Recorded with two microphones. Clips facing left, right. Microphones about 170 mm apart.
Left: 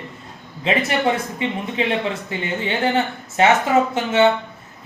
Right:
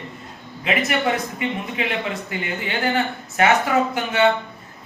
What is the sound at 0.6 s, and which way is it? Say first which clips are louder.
A man's voice: left 2 dB; 30° left (ahead or behind).